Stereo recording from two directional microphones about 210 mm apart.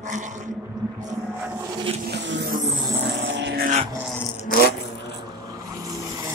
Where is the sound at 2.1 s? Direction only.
55° right (ahead or behind).